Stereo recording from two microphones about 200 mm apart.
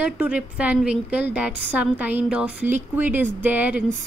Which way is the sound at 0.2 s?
5° right (ahead or behind).